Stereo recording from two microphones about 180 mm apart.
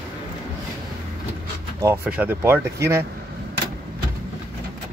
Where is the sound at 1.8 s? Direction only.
10° right (ahead or behind).